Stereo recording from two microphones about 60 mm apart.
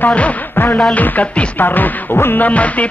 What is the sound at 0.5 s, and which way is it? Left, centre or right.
Music, left.